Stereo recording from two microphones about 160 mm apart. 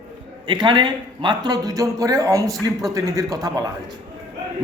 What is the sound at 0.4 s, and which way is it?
Speech, 30° right (ahead or behind).